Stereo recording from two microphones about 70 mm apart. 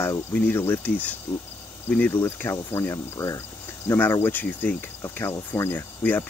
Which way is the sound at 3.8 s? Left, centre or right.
Left.